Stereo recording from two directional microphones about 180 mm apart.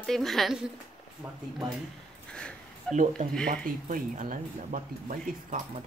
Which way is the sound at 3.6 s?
50° right (ahead or behind).